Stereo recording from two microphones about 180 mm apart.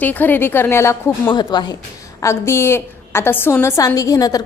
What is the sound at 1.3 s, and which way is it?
A woman's voice, 25° left (ahead or behind).